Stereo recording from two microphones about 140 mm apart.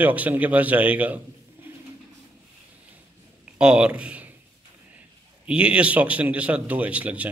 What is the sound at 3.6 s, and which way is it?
Speech, 10° right (ahead or behind).